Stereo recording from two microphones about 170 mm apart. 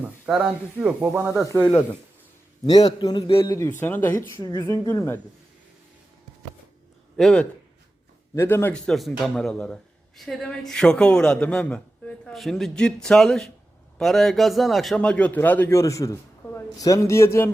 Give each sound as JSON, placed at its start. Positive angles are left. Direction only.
{"t": 0.0, "sound": "a man's voice", "side_deg": -5}
{"t": 1.1, "sound": "speech", "side_deg": -15}
{"t": 3.0, "sound": "a man's voice", "side_deg": 25}
{"t": 7.2, "sound": "a man's voice", "side_deg": 0}
{"t": 8.4, "sound": "a man's voice", "side_deg": 15}